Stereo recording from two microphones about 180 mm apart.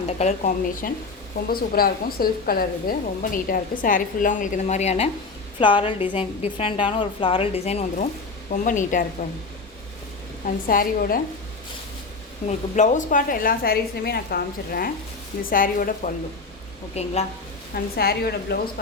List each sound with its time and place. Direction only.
0.2 s a woman's voice: 40° left (ahead or behind)
5.5 s a woman's voice: 25° left (ahead or behind); by 9.0 s 45° left (ahead or behind)
10.4 s a woman's voice: 50° left (ahead or behind)
12.5 s a woman's voice: 40° left (ahead or behind)
16.9 s a woman's voice: 35° left (ahead or behind)
17.9 s a woman's voice: 60° left (ahead or behind)